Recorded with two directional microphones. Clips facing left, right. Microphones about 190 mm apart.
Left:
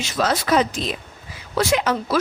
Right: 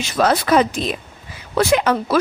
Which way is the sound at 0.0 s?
55° right (ahead or behind).